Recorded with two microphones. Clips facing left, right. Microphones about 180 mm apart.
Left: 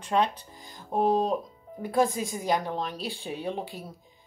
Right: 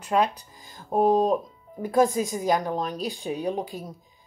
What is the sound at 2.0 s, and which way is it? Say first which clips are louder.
Speech: right 5 dB; 20° right (ahead or behind).